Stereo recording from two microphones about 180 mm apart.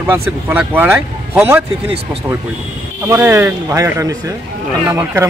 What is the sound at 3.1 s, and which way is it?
A man's voice, 10° right (ahead or behind).